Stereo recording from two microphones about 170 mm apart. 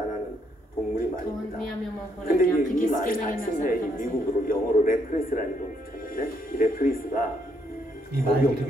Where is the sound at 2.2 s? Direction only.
55° left (ahead or behind).